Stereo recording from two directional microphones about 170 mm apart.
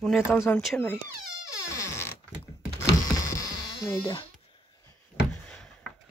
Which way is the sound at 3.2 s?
20° left (ahead or behind).